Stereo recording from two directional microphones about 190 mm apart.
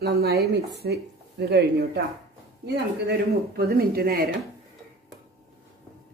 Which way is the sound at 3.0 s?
55° right (ahead or behind).